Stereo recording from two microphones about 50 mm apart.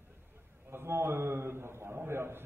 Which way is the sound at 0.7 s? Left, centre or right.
Right.